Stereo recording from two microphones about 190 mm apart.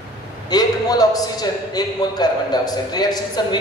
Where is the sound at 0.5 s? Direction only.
20° left (ahead or behind).